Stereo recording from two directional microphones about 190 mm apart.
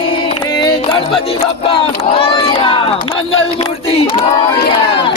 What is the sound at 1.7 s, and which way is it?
Speech, 30° left (ahead or behind).